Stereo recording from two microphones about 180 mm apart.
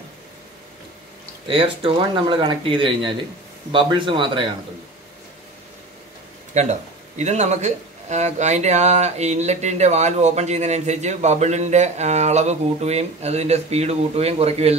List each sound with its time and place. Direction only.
1.5 s speech: 30° right (ahead or behind)
6.5 s speech: 40° right (ahead or behind)